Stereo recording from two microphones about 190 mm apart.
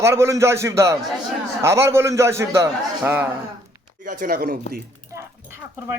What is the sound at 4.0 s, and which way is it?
Speech, 45° right (ahead or behind).